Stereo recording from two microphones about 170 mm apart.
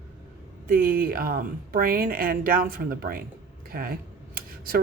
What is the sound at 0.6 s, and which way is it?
Speech, 60° right (ahead or behind).